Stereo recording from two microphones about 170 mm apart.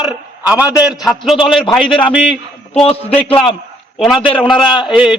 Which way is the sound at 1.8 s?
30° left (ahead or behind).